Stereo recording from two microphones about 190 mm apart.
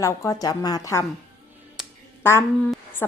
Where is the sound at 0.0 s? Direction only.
15° left (ahead or behind).